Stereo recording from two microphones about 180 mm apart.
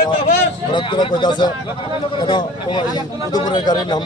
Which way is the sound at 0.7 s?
25° left (ahead or behind).